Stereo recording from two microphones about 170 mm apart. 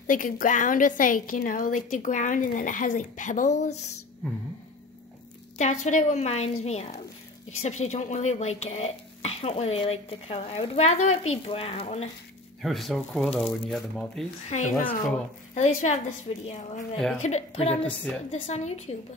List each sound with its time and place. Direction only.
0.0 s a woman's voice: 50° left (ahead or behind)
5.6 s speech: 45° left (ahead or behind)
12.6 s speech: centre (ahead or behind)
14.4 s a woman's voice: 45° left (ahead or behind)